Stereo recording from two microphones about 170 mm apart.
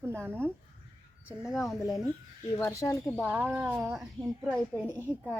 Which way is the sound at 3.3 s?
10° right (ahead or behind).